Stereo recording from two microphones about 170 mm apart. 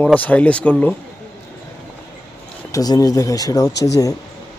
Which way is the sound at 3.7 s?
90° left.